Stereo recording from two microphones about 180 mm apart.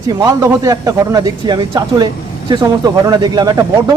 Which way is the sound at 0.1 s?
20° right (ahead or behind).